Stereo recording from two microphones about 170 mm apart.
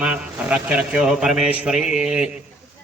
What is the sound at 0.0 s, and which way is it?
A man's voice, 5° right (ahead or behind).